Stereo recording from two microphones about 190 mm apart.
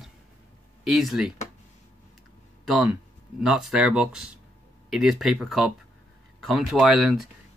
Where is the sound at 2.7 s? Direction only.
5° right (ahead or behind).